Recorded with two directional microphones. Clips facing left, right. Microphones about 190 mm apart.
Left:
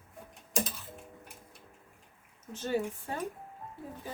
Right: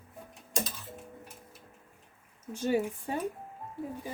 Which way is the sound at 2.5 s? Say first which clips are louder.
Right 3 dB; 10° right (ahead or behind).